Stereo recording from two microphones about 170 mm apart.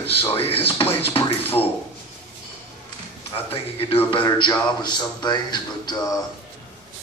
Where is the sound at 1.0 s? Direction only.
35° left (ahead or behind).